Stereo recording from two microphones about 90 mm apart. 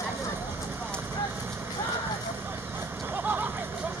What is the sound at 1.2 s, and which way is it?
Clip-clop, 25° right (ahead or behind).